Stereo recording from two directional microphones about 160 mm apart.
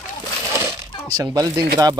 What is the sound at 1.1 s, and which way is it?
Speech, 25° right (ahead or behind).